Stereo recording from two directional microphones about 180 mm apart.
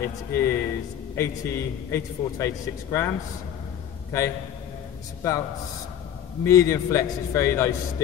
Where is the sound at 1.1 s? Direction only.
15° left (ahead or behind).